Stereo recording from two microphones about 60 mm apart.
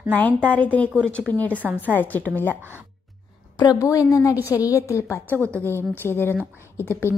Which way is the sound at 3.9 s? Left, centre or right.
Left.